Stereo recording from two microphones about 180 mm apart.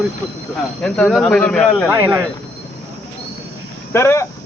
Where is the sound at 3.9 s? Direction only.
15° left (ahead or behind).